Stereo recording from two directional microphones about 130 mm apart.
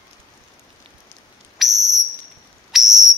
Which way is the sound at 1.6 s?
Centre (ahead or behind).